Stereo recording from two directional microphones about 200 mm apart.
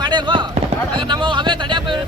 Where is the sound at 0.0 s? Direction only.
20° right (ahead or behind).